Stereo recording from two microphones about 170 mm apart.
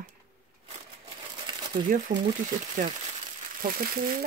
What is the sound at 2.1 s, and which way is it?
Speech, 50° right (ahead or behind).